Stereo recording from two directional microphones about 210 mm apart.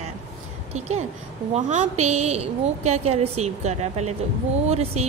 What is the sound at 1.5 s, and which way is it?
Speech, 30° right (ahead or behind).